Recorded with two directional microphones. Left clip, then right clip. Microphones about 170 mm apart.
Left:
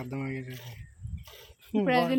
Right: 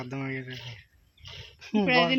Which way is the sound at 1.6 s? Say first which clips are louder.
Right 2 dB; 5° right (ahead or behind).